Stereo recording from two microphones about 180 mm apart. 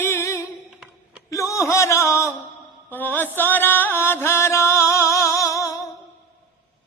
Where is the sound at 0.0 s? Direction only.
15° left (ahead or behind).